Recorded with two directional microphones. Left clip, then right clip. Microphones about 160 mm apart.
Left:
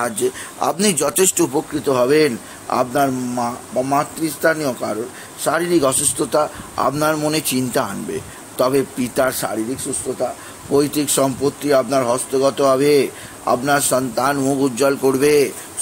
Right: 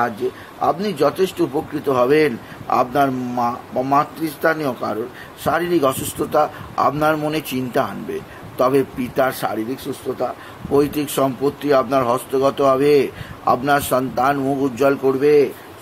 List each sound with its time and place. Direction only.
0.6 s speech: 45° left (ahead or behind)
1.5 s speech: 25° left (ahead or behind)
15.0 s speech: 45° left (ahead or behind)